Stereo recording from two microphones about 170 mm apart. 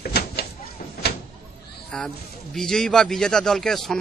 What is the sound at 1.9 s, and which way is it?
A man's voice, 5° left (ahead or behind).